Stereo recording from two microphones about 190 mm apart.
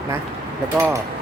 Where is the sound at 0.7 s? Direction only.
15° right (ahead or behind).